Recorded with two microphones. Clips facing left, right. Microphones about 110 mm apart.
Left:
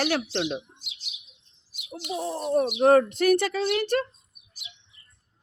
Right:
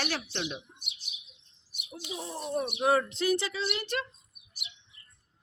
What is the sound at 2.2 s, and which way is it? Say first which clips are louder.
Speech: left 8 dB; 45° left (ahead or behind).